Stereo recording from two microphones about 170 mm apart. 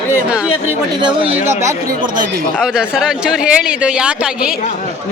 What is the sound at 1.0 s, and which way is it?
Speech, 30° right (ahead or behind).